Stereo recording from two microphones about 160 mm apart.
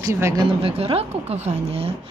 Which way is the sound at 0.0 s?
15° right (ahead or behind).